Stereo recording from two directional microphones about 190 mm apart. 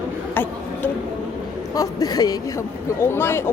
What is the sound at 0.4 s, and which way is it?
Speech, 10° left (ahead or behind).